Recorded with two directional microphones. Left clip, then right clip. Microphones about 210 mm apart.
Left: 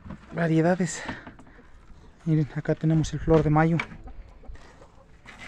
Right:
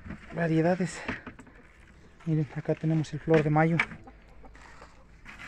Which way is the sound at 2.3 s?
25° left (ahead or behind).